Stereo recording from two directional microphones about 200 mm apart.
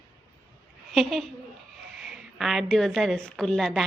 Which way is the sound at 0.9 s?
Centre (ahead or behind).